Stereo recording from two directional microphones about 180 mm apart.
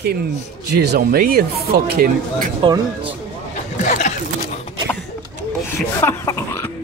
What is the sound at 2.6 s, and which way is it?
Speech, 25° right (ahead or behind).